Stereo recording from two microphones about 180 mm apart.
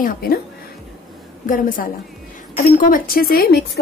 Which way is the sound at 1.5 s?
50° left (ahead or behind).